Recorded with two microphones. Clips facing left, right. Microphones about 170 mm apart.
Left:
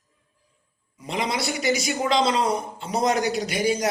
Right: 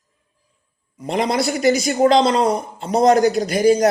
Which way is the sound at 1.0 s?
45° right (ahead or behind).